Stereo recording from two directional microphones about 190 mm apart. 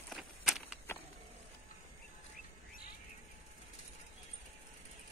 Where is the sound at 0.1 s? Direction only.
Centre (ahead or behind).